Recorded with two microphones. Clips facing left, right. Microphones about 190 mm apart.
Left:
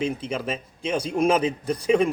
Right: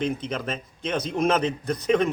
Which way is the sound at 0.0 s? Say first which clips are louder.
Left 1 dB; 10° left (ahead or behind).